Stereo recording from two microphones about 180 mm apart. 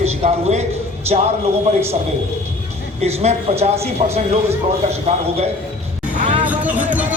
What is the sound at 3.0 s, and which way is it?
A man's voice, 35° right (ahead or behind).